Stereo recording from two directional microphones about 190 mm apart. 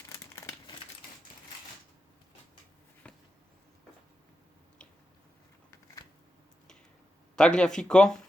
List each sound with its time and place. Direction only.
0.1 s crumpling: 15° left (ahead or behind)
7.3 s speech: 5° left (ahead or behind)